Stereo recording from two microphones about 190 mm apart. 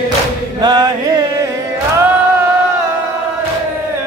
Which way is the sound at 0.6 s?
20° right (ahead or behind).